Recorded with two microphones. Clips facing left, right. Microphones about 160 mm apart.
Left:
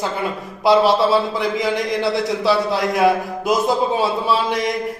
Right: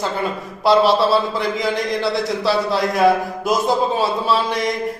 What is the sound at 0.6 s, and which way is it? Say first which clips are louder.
A man's voice: even; 20° left (ahead or behind).